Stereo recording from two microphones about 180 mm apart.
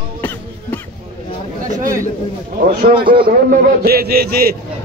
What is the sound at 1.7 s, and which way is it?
Chatter, 45° right (ahead or behind).